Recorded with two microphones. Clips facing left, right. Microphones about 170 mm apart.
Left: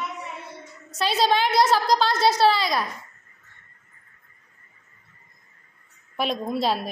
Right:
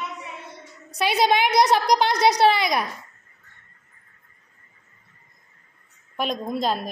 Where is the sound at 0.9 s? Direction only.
15° right (ahead or behind).